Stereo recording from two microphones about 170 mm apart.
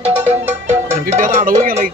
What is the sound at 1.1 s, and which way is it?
Music, 50° right (ahead or behind).